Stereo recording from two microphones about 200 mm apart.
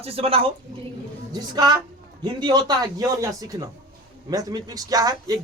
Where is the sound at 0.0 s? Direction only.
30° right (ahead or behind).